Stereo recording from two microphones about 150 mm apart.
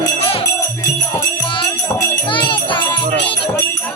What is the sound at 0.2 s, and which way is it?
Music, 40° left (ahead or behind).